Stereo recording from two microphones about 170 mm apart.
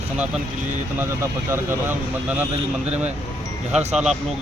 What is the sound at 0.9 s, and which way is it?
Speech, 15° right (ahead or behind).